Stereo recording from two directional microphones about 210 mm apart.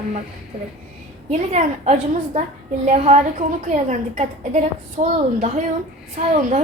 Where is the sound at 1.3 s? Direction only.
35° right (ahead or behind).